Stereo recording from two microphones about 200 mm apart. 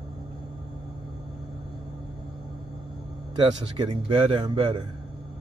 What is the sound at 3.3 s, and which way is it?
Speech, 25° right (ahead or behind).